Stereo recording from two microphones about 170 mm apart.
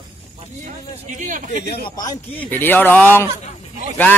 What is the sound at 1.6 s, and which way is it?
Speech, 70° left (ahead or behind).